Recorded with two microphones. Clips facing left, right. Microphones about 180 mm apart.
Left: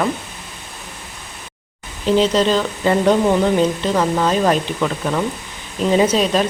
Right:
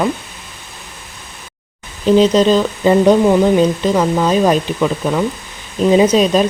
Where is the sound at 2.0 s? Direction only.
15° right (ahead or behind).